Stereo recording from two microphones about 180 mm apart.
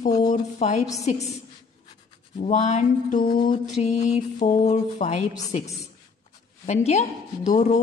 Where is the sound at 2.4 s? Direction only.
40° left (ahead or behind).